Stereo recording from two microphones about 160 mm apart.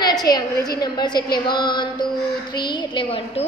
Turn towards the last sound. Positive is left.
turn(degrees=35)  # may be behind; listen again after turning